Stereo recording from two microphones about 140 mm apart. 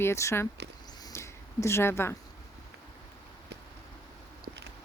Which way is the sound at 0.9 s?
25° left (ahead or behind).